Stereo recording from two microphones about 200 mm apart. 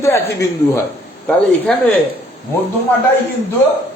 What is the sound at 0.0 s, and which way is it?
Speech, 10° left (ahead or behind).